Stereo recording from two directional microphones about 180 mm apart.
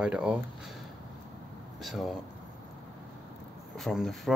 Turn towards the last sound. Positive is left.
turn(degrees=0)  # may be behind; listen again after turning